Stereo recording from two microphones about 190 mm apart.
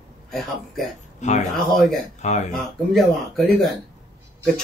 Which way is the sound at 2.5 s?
Centre (ahead or behind).